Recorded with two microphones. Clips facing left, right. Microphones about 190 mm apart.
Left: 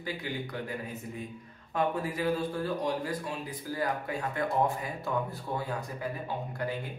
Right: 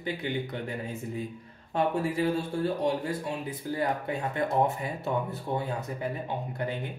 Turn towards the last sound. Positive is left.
turn(degrees=-25)  # may be behind; listen again after turning